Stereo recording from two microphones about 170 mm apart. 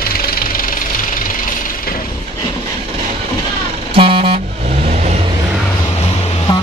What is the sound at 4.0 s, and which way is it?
Vehicle, 30° right (ahead or behind).